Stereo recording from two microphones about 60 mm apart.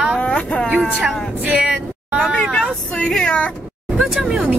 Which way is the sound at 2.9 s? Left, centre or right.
Centre.